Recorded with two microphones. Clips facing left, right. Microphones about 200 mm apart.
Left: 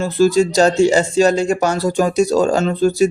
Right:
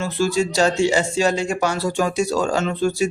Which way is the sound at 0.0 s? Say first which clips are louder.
Left 7 dB; 40° left (ahead or behind).